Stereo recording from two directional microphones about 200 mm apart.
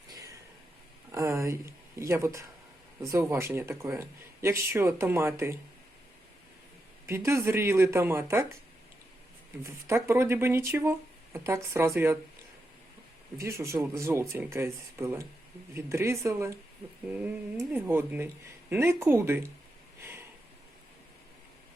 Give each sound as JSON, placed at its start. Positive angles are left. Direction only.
{"t": 0.1, "sound": "a sound", "side_deg": -15}
{"t": 1.1, "sound": "speech", "side_deg": -15}
{"t": 7.1, "sound": "speech", "side_deg": -15}
{"t": 9.6, "sound": "speech", "side_deg": -15}
{"t": 13.3, "sound": "speech", "side_deg": -15}
{"t": 17.6, "sound": "speech", "side_deg": -10}
{"t": 20.0, "sound": "a sound", "side_deg": -10}